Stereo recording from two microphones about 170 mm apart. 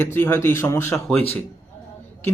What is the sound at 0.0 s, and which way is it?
Speech, 15° left (ahead or behind).